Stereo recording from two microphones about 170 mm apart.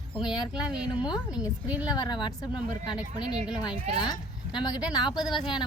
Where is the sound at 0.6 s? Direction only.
5° right (ahead or behind).